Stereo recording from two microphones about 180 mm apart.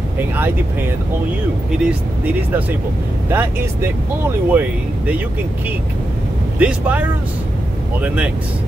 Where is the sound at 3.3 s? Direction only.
10° right (ahead or behind).